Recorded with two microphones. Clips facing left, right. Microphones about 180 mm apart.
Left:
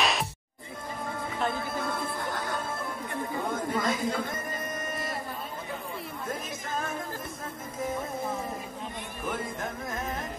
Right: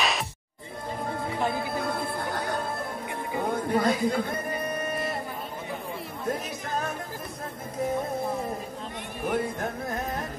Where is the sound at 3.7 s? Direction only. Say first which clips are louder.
Right 6 dB; 35° right (ahead or behind).